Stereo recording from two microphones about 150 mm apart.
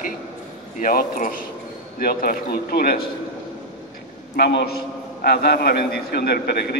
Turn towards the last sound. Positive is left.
turn(degrees=90)